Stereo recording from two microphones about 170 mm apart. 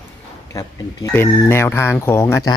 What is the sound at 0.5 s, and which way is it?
Speech, 15° left (ahead or behind).